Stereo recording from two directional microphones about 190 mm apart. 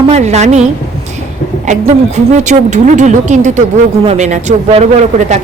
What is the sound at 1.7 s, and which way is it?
Speech, 35° right (ahead or behind).